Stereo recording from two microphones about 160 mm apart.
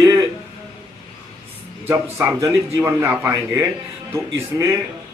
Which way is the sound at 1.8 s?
15° right (ahead or behind).